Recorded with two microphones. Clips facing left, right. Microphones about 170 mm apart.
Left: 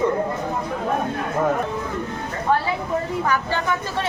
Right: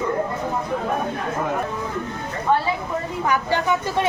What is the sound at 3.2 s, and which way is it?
Speech, 15° right (ahead or behind).